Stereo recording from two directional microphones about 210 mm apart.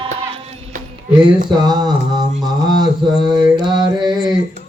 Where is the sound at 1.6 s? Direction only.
20° right (ahead or behind).